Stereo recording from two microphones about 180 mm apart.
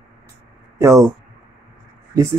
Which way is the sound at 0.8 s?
15° right (ahead or behind).